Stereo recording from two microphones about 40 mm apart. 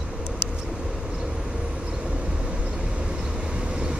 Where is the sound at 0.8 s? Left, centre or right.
Right.